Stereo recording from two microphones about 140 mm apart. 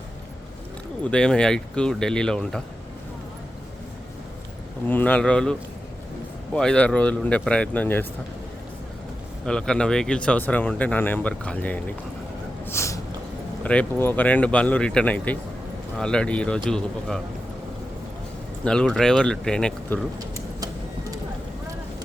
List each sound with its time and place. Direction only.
1.1 s speech: 5° left (ahead or behind)
4.9 s speech: 10° left (ahead or behind)
9.5 s speech: 5° left (ahead or behind)
12.6 s a sound: 20° left (ahead or behind)
13.7 s speech: 10° left (ahead or behind)
18.6 s speech: 5° left (ahead or behind)